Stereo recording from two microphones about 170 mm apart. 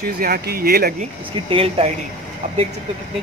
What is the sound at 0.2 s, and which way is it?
Speech, 60° right (ahead or behind).